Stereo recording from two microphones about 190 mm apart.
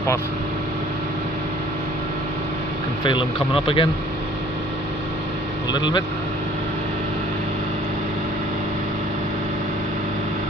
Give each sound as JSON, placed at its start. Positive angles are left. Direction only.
{"t": 3.0, "sound": "speech", "side_deg": 25}
{"t": 5.8, "sound": "speech", "side_deg": 25}